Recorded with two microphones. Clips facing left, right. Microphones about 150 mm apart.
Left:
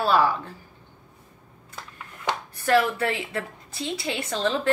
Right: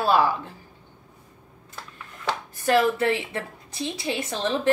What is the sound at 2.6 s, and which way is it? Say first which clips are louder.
A woman's voice: right 1 dB; 20° right (ahead or behind).